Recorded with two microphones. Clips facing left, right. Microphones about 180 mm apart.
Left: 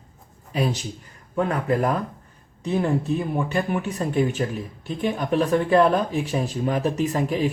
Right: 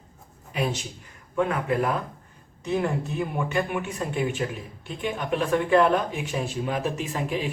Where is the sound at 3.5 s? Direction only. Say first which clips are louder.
Left 2 dB; 35° left (ahead or behind).